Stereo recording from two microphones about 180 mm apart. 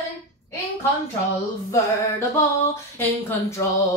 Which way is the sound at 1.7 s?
15° left (ahead or behind).